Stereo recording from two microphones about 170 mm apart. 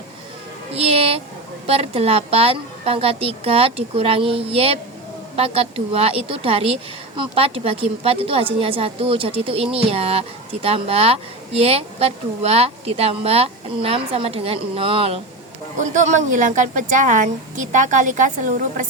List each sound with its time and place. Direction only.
0.7 s a sound: 35° right (ahead or behind)
1.6 s a woman's voice: 35° right (ahead or behind)
15.8 s a woman's voice: 45° right (ahead or behind)